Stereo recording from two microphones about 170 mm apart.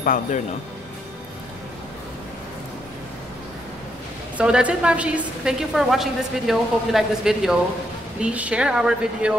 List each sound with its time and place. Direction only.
0.0 s speech: 50° left (ahead or behind)
4.4 s a woman's voice: 5° right (ahead or behind)